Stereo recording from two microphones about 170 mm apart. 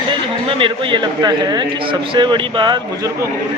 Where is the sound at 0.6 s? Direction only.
30° right (ahead or behind).